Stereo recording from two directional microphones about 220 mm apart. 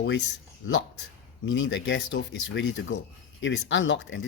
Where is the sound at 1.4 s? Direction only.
60° left (ahead or behind).